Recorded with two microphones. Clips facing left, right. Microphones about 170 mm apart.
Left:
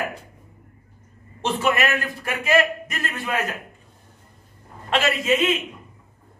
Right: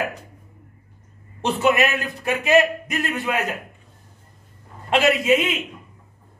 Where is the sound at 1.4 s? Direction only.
15° right (ahead or behind).